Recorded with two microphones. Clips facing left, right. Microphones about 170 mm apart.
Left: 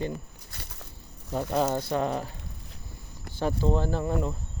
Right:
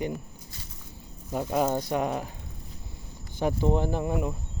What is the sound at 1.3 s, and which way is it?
Speech, 10° right (ahead or behind).